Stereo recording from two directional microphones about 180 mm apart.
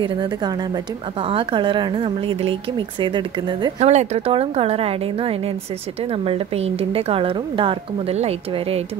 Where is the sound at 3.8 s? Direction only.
40° right (ahead or behind).